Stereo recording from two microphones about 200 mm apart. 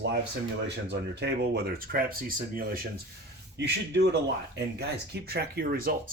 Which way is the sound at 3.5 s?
60° right (ahead or behind).